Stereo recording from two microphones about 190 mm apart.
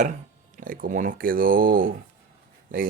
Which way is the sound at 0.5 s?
45° right (ahead or behind).